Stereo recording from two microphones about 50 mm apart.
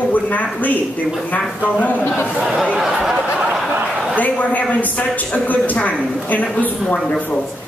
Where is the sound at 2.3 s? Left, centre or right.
Centre.